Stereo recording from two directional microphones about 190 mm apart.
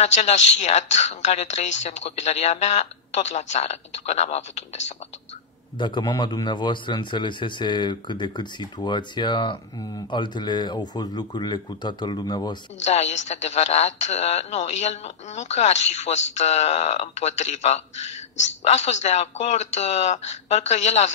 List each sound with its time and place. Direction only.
0.0 s speech: 35° left (ahead or behind)
5.8 s a man's voice: 25° left (ahead or behind)
12.8 s speech: 35° left (ahead or behind)